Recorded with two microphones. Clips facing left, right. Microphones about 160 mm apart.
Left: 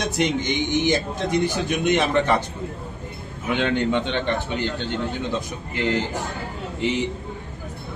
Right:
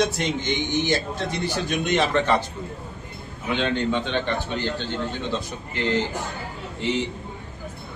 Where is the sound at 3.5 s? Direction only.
15° left (ahead or behind).